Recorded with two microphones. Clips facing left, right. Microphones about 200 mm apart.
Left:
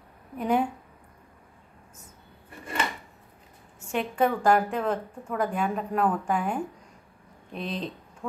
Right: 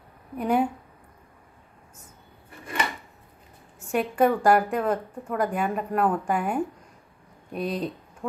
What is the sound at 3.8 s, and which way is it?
A woman's voice, 5° right (ahead or behind).